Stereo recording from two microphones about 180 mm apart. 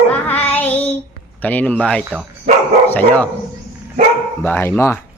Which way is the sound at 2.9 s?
10° left (ahead or behind).